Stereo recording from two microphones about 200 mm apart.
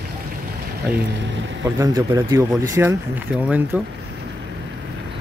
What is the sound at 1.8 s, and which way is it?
Speech, 20° right (ahead or behind).